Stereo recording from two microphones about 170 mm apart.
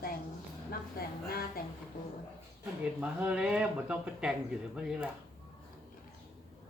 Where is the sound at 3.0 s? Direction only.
5° right (ahead or behind).